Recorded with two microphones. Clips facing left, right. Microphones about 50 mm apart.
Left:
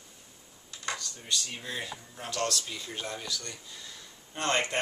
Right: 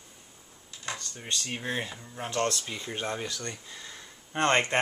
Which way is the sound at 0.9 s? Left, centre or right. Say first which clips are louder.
Even; right.